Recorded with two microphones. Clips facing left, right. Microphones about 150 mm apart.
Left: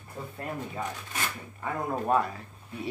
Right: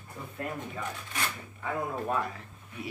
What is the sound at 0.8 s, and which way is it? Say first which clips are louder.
Speech: left 4 dB; 40° left (ahead or behind).